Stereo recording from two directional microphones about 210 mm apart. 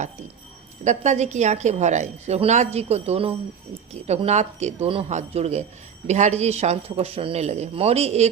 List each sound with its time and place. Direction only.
0.9 s a woman's voice: 35° right (ahead or behind)